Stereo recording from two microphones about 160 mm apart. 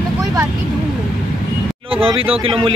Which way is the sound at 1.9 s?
35° right (ahead or behind).